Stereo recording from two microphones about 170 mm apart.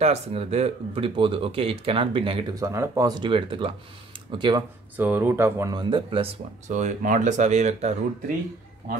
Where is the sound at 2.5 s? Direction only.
20° right (ahead or behind).